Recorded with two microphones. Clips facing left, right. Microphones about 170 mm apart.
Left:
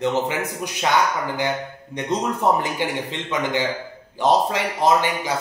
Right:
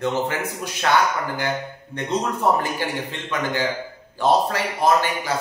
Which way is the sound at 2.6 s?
20° left (ahead or behind).